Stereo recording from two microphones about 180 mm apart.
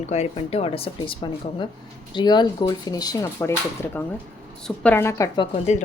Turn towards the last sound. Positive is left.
turn(degrees=35)  # may be behind; listen again after turning